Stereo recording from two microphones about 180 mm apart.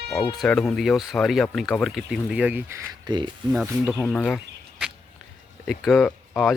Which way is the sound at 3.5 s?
5° right (ahead or behind).